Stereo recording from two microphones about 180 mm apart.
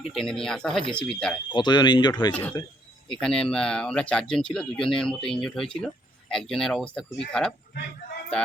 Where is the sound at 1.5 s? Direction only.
25° left (ahead or behind).